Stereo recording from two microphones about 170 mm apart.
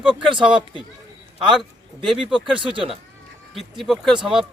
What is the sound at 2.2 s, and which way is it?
Speech, 30° right (ahead or behind).